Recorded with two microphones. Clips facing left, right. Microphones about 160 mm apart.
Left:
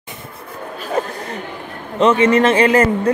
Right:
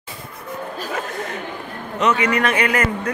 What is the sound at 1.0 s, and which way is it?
Chatter, 30° left (ahead or behind).